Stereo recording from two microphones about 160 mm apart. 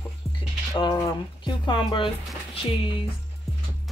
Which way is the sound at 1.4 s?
30° left (ahead or behind).